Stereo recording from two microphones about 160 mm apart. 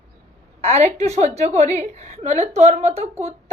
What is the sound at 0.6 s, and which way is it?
A woman's voice, 40° right (ahead or behind).